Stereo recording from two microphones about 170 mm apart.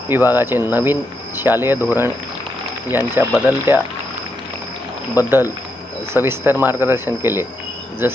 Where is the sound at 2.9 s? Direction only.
10° right (ahead or behind).